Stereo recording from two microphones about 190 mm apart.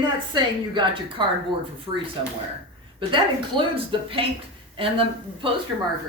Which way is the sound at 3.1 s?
25° right (ahead or behind).